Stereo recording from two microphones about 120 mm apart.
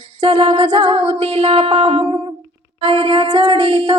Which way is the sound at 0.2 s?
50° right (ahead or behind).